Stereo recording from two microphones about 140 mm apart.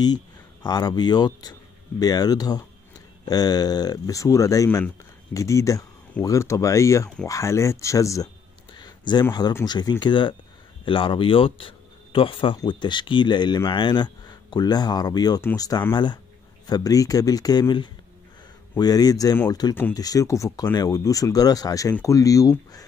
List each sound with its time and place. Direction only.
0.7 s speech: 30° left (ahead or behind)
8.7 s a sound: 30° left (ahead or behind)
9.3 s speech: 30° left (ahead or behind)